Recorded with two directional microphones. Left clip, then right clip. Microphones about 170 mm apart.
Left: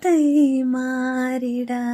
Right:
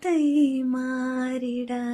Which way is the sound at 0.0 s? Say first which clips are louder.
Left 5 dB; 35° left (ahead or behind).